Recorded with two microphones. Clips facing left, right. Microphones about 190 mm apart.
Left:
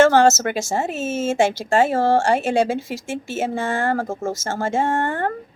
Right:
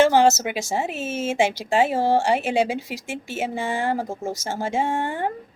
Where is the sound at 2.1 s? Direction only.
45° left (ahead or behind).